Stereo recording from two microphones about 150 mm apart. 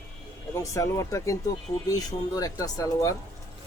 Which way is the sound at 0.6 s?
20° left (ahead or behind).